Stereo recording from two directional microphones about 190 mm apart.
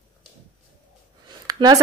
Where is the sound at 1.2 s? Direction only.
20° right (ahead or behind).